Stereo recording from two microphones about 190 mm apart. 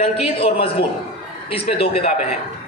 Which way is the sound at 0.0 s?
30° left (ahead or behind).